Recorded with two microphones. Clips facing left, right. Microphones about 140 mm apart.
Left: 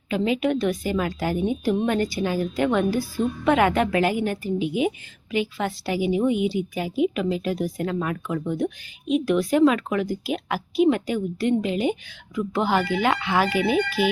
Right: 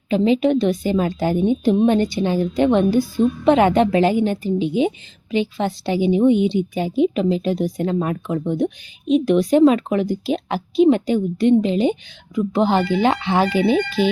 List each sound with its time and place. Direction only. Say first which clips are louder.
0.1 s a woman's voice: right 6 dB; 25° right (ahead or behind)